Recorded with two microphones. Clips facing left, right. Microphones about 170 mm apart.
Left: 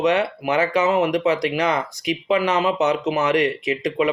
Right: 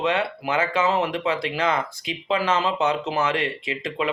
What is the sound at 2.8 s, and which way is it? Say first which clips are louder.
Speech: left 3 dB; 30° right (ahead or behind).